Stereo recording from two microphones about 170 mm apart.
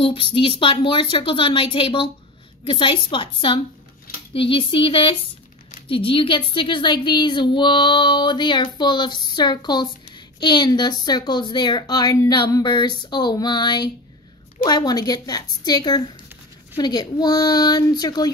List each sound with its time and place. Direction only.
0.0 s a woman's voice: 35° left (ahead or behind)